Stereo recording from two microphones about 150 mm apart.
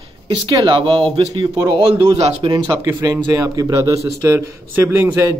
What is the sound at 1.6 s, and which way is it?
A man's voice, 25° right (ahead or behind).